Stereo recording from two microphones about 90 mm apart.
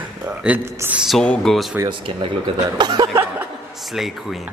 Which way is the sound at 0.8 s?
30° right (ahead or behind).